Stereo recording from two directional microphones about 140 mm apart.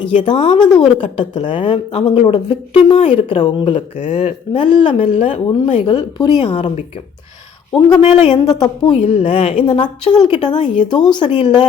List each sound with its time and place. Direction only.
0.1 s speech: 60° left (ahead or behind)
1.0 s a woman's voice: 35° left (ahead or behind)
3.9 s speech: 65° left (ahead or behind)
4.5 s a woman's voice: 35° left (ahead or behind)
7.7 s speech: 5° left (ahead or behind)
8.4 s a woman's voice: 30° left (ahead or behind)
8.9 s a woman's voice: 40° left (ahead or behind)